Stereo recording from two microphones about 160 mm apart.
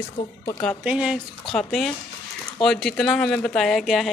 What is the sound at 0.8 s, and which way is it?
Speech, 5° right (ahead or behind).